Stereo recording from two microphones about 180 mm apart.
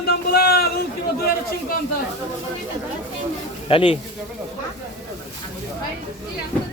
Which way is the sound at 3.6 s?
30° left (ahead or behind).